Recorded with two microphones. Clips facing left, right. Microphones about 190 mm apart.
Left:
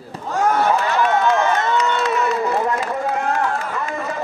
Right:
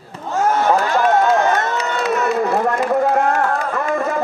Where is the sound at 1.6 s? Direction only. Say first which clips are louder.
Left 1 dB; 45° right (ahead or behind).